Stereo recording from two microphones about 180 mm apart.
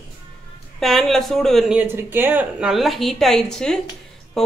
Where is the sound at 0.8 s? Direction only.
Centre (ahead or behind).